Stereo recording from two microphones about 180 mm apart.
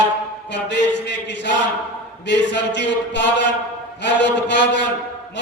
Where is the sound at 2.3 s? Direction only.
80° left.